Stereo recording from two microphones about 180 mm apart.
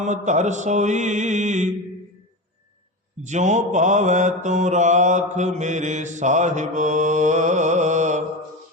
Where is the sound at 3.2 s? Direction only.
40° right (ahead or behind).